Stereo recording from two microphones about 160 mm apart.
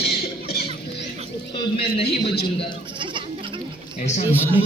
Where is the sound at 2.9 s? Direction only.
30° right (ahead or behind).